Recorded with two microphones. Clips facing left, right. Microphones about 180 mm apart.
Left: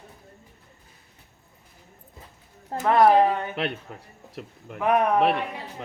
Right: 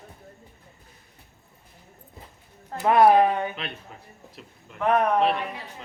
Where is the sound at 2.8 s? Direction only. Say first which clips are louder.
Right 1 dB; 15° right (ahead or behind).